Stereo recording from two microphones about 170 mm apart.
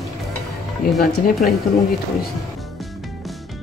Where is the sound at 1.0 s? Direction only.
60° left (ahead or behind).